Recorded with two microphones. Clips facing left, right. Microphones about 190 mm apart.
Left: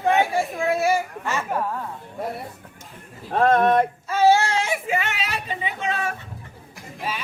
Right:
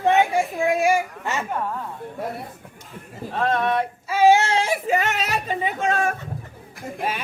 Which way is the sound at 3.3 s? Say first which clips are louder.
Left 5 dB; 50° left (ahead or behind).